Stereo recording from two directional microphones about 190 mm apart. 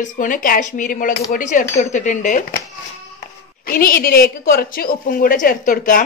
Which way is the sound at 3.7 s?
50° left (ahead or behind).